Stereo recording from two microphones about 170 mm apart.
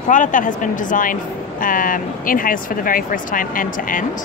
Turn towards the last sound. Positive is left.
turn(degrees=55)  # may be behind; listen again after turning